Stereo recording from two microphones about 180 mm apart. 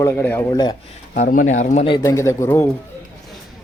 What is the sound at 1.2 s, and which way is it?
Speech, 45° left (ahead or behind).